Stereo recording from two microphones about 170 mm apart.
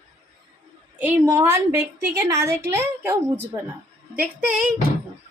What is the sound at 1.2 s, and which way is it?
A woman's voice, 15° right (ahead or behind).